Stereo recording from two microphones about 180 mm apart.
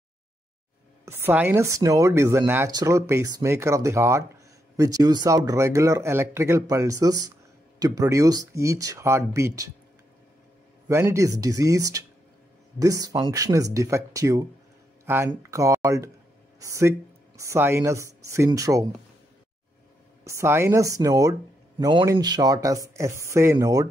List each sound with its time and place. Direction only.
1.0 s speech: 15° right (ahead or behind)
10.9 s speech: 15° right (ahead or behind)
20.2 s speech: 15° right (ahead or behind)